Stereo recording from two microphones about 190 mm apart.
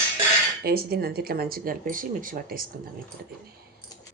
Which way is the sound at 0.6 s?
55° right (ahead or behind).